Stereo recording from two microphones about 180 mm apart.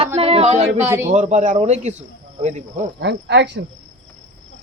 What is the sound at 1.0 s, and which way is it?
Speech, 45° right (ahead or behind).